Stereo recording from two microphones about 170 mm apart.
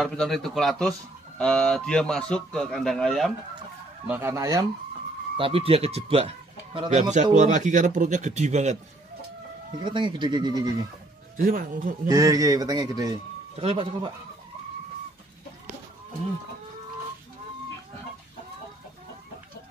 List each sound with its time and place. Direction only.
0.0 s a man's voice: centre (ahead or behind)
4.1 s speech: 15° right (ahead or behind)
5.4 s speech: 35° right (ahead or behind)
6.9 s speech: 45° right (ahead or behind)
9.7 s speech: 30° right (ahead or behind)
11.3 s speech: 55° right (ahead or behind)
12.1 s speech: 20° right (ahead or behind)
13.6 s speech: 35° right (ahead or behind)